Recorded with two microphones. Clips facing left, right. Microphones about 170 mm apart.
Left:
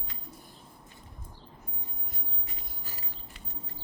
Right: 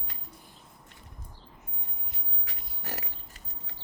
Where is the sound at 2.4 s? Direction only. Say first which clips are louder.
Right 3 dB; 80° right.